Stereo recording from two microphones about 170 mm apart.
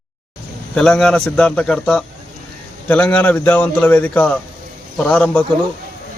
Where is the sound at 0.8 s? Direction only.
5° left (ahead or behind).